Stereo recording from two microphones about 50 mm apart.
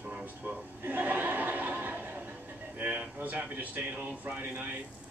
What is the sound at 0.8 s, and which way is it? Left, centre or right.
Chuckle, right.